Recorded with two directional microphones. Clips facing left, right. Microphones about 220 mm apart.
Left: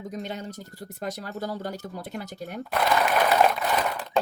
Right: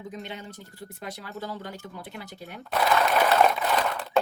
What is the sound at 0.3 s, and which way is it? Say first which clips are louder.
Speech: left 4 dB; 40° left (ahead or behind).